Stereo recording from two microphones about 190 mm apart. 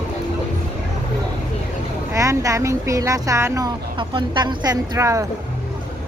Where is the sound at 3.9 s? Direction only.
25° right (ahead or behind).